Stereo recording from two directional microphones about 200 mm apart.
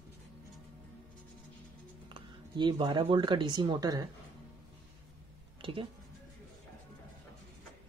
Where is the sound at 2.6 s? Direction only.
20° right (ahead or behind).